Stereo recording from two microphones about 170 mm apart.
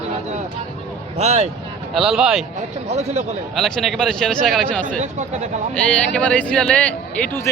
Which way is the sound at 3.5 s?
Centre (ahead or behind).